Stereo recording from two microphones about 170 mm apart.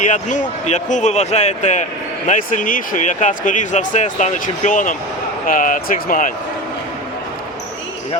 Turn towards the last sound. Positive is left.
turn(degrees=55)  # may be behind; listen again after turning